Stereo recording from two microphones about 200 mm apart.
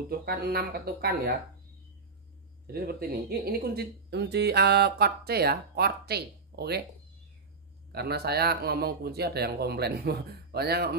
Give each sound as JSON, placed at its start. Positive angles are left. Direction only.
{"t": 0.2, "sound": "speech", "side_deg": -50}
{"t": 2.6, "sound": "speech", "side_deg": -50}
{"t": 7.9, "sound": "speech", "side_deg": -55}